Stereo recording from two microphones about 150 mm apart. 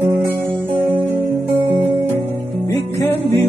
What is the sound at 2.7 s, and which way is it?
Music, 20° left (ahead or behind).